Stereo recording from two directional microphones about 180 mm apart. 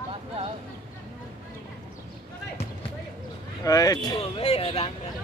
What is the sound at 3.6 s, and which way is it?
Speech, 20° left (ahead or behind).